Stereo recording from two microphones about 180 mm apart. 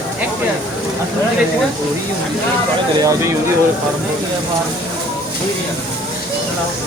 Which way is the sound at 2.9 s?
15° right (ahead or behind).